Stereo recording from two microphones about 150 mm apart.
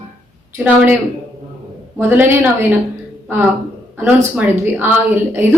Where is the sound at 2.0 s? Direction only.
15° right (ahead or behind).